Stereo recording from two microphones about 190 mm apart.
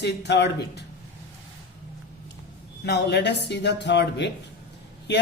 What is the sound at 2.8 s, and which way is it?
Speech, 60° left (ahead or behind).